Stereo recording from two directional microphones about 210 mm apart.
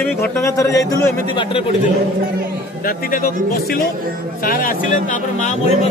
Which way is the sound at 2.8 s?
40° left (ahead or behind).